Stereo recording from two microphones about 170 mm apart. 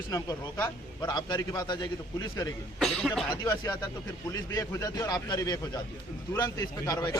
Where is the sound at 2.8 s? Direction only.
Centre (ahead or behind).